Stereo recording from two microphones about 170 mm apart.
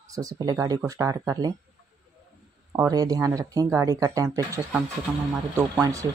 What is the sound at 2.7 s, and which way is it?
Speech, 20° right (ahead or behind).